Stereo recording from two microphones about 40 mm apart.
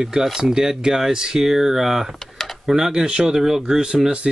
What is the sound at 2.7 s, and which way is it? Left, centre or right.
Speech, centre.